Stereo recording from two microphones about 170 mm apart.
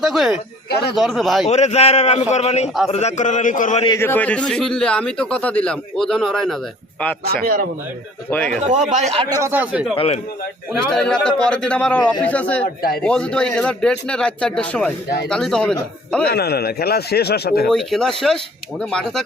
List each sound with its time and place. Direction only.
0.0 s a man's voice: centre (ahead or behind)
0.7 s speech: 70° left (ahead or behind)
0.9 s a man's voice: centre (ahead or behind)
1.5 s a man's voice: 40° left (ahead or behind)
3.8 s a man's voice: 15° left (ahead or behind)
7.4 s a man's voice: 60° right (ahead or behind)
8.6 s speech: 45° right (ahead or behind)
9.4 s speech: 10° right (ahead or behind)
9.9 s speech: 35° left (ahead or behind)
10.9 s a man's voice: 5° left (ahead or behind)
16.3 s speech: 70° left (ahead or behind)
17.7 s a man's voice: 5° left (ahead or behind)